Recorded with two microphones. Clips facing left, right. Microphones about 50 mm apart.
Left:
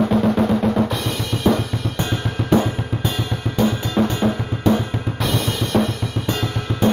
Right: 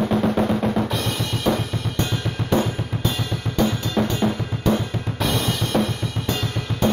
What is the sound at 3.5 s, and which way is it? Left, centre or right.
Drum, centre.